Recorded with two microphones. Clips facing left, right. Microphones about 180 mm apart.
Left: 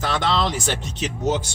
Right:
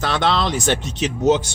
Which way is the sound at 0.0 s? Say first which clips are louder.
Right 2 dB; 75° right (ahead or behind).